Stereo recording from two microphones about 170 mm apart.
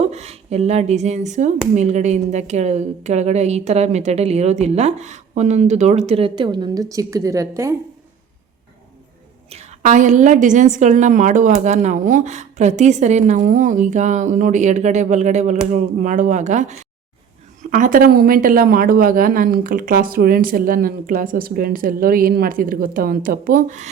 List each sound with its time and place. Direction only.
0.0 s speech: 40° right (ahead or behind); by 7.8 s 15° right (ahead or behind)
9.8 s a woman's voice: 45° right (ahead or behind)